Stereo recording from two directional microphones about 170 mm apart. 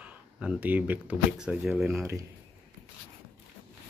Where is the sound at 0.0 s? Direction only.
5° right (ahead or behind).